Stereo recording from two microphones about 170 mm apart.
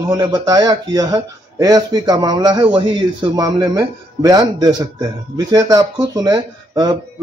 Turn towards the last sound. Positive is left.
turn(degrees=-20)  # may be behind; listen again after turning